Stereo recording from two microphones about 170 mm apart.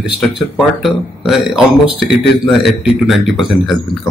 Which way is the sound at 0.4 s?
Centre (ahead or behind).